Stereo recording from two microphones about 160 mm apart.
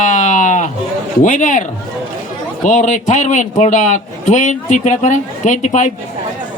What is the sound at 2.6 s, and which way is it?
Speech, 50° left (ahead or behind).